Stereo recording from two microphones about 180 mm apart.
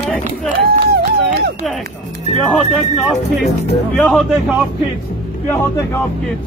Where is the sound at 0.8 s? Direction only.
60° right (ahead or behind).